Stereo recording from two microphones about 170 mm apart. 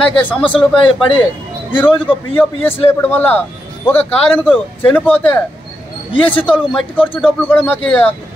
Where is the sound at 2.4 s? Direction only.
10° left (ahead or behind).